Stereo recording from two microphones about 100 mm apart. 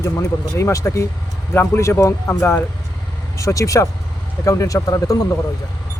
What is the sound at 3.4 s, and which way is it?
Speech, 35° left (ahead or behind).